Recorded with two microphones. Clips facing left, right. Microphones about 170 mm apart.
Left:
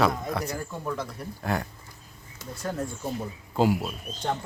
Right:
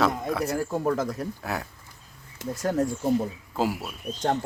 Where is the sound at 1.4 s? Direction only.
5° right (ahead or behind).